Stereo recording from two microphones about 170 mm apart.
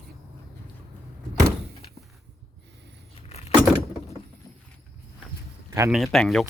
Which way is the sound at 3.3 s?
40° left (ahead or behind).